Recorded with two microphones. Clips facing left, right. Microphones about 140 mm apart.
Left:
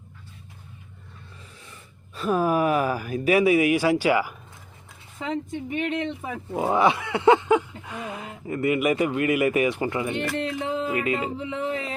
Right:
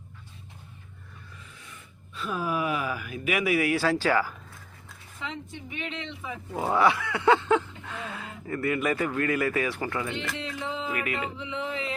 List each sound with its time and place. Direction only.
1.7 s speech: 45° left (ahead or behind); by 4.4 s 15° left (ahead or behind)
5.2 s speech: 45° left (ahead or behind)
6.5 s speech: 20° left (ahead or behind)
10.3 s speech: 50° left (ahead or behind)
10.9 s music: 25° left (ahead or behind)
11.3 s speech: 45° left (ahead or behind)